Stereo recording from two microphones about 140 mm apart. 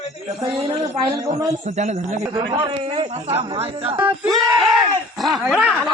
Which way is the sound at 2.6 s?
40° right (ahead or behind).